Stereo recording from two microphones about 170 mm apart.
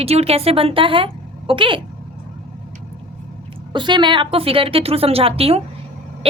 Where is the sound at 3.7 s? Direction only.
25° right (ahead or behind).